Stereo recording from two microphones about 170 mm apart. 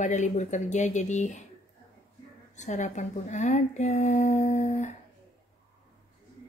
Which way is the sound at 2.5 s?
45° left (ahead or behind).